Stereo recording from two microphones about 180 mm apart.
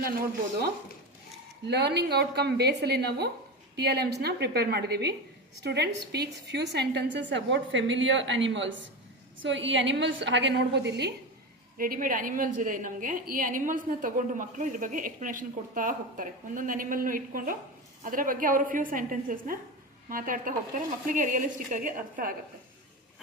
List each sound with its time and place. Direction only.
1.6 s a woman's voice: 70° right (ahead or behind)
11.8 s a woman's voice: 50° right (ahead or behind)